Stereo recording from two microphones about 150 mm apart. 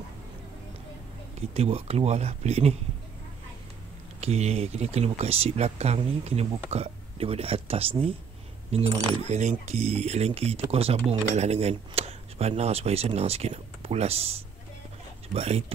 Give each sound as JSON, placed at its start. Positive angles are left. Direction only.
{"t": 1.5, "sound": "speech", "side_deg": -40}
{"t": 4.2, "sound": "speech", "side_deg": -45}
{"t": 15.3, "sound": "speech", "side_deg": -45}